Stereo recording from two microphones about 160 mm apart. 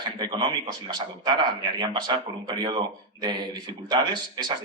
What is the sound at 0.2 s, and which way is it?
Speech, 30° right (ahead or behind).